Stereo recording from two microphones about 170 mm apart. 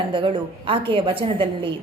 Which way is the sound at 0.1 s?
30° right (ahead or behind).